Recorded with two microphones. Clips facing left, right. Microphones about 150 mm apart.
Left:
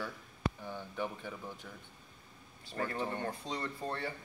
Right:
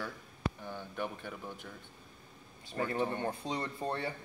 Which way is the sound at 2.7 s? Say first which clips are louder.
Right 3 dB; 20° right (ahead or behind).